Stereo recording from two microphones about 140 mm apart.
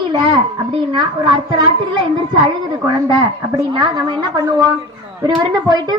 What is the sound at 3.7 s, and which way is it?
A child's voice, 35° right (ahead or behind).